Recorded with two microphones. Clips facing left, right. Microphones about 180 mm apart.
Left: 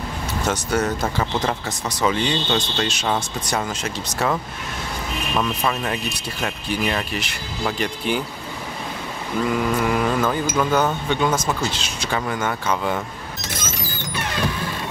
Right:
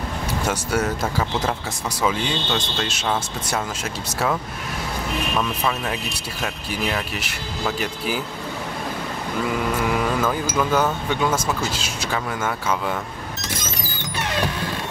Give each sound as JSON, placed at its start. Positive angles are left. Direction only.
{"t": 0.5, "sound": "speech", "side_deg": -5}
{"t": 2.0, "sound": "speech", "side_deg": -5}
{"t": 5.4, "sound": "speech", "side_deg": 0}
{"t": 9.4, "sound": "speech", "side_deg": 0}